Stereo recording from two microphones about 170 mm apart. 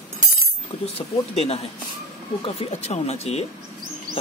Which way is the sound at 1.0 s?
35° left (ahead or behind).